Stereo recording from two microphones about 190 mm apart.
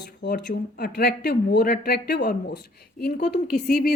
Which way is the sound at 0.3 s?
55° left (ahead or behind).